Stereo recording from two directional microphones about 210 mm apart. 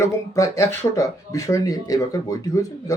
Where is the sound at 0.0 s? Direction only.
15° left (ahead or behind).